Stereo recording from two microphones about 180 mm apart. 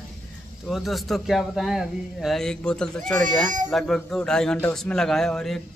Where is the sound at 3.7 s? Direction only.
Centre (ahead or behind).